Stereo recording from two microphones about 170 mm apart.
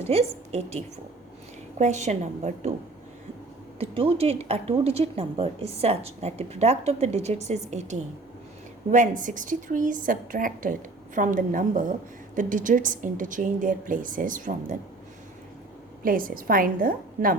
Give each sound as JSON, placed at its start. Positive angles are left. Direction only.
{"t": 0.0, "sound": "speech", "side_deg": -40}
{"t": 1.8, "sound": "a woman's voice", "side_deg": -45}
{"t": 3.8, "sound": "a woman's voice", "side_deg": -35}
{"t": 16.0, "sound": "a woman's voice", "side_deg": -55}